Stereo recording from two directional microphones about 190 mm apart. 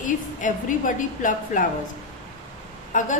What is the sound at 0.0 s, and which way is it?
A woman's voice, 40° left (ahead or behind).